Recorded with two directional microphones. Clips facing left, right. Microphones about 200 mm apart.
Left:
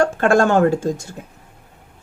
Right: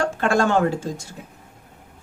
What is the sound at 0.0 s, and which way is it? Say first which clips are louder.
Speech: left 5 dB; 50° left (ahead or behind).